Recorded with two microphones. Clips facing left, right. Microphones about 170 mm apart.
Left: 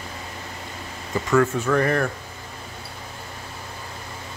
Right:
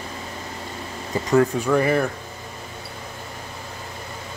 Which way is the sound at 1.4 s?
15° right (ahead or behind).